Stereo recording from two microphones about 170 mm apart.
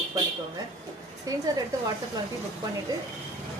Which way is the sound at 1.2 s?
20° right (ahead or behind).